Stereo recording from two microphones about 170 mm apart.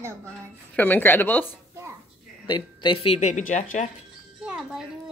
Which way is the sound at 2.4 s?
30° left (ahead or behind).